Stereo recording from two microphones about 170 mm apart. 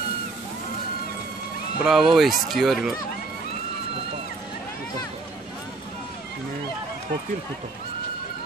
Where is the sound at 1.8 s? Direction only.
Centre (ahead or behind).